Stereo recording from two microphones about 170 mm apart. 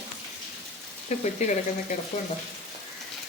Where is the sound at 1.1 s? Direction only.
40° left (ahead or behind).